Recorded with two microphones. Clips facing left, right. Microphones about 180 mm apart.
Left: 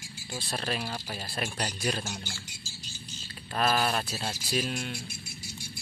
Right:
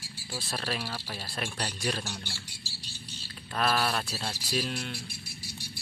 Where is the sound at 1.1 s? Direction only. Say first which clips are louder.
Left 2 dB; 5° left (ahead or behind).